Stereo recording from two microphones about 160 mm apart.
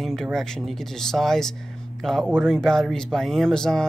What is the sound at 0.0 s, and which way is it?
Speech, centre (ahead or behind).